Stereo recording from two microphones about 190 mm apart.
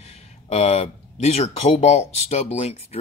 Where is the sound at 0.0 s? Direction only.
35° left (ahead or behind).